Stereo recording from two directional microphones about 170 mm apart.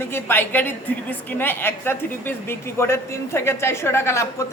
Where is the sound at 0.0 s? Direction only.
10° left (ahead or behind).